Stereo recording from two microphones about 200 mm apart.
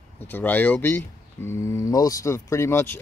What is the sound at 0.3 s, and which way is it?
Speech, 10° left (ahead or behind).